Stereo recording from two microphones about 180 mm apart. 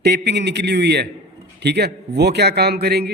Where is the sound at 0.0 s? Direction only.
70° right (ahead or behind).